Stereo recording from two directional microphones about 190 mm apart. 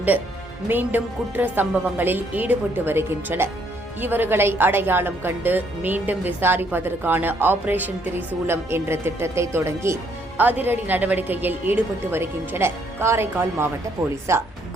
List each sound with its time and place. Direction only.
0.7 s a woman's voice: 10° right (ahead or behind)